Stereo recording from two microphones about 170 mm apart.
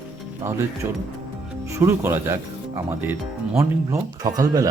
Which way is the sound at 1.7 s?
15° right (ahead or behind).